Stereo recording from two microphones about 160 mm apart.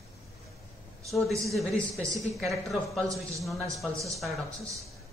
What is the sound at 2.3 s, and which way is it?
Speech, centre (ahead or behind).